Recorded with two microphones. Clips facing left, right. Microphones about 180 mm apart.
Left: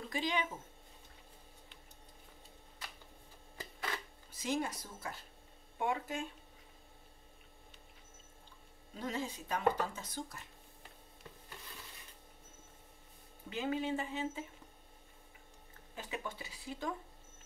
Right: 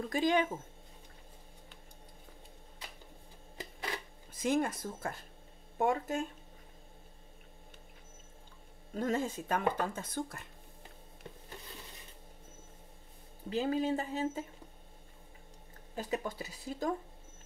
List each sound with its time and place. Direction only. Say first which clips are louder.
0.1 s speech: right 7 dB; 50° right (ahead or behind)
4.3 s speech: right 6 dB; 50° right (ahead or behind)
8.9 s speech: right 7 dB; 50° right (ahead or behind)
13.5 s speech: right 5 dB; 35° right (ahead or behind)
15.9 s speech: right 7 dB; 40° right (ahead or behind)